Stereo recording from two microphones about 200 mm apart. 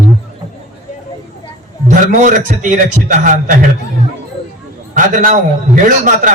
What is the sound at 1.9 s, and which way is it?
A man's voice, 40° right (ahead or behind).